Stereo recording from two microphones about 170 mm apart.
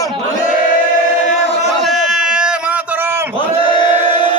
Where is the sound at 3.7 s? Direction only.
25° left (ahead or behind).